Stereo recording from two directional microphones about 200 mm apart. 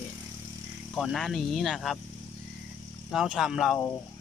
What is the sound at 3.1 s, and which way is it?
Speech, 5° right (ahead or behind).